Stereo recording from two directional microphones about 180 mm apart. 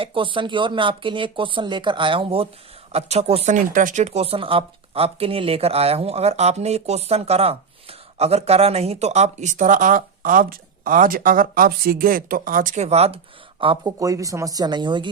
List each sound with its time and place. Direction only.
0.0 s speech: 30° right (ahead or behind)
3.5 s speech: 45° right (ahead or behind); by 13.9 s 30° right (ahead or behind)
14.0 s speech: 20° right (ahead or behind)